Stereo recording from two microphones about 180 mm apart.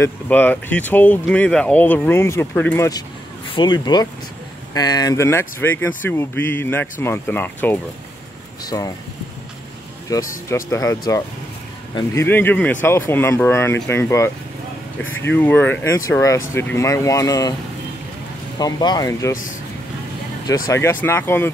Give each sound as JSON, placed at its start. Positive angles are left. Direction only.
{"t": 0.0, "sound": "speech", "side_deg": 10}
{"t": 3.5, "sound": "speech", "side_deg": 25}
{"t": 8.6, "sound": "speech", "side_deg": 20}
{"t": 10.1, "sound": "speech", "side_deg": 20}
{"t": 15.0, "sound": "speech", "side_deg": 90}
{"t": 15.3, "sound": "speech", "side_deg": 10}
{"t": 18.6, "sound": "speech", "side_deg": 20}
{"t": 20.4, "sound": "speech", "side_deg": 20}